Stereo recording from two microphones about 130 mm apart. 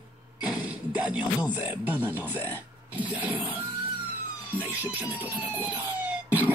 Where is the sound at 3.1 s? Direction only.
10° right (ahead or behind).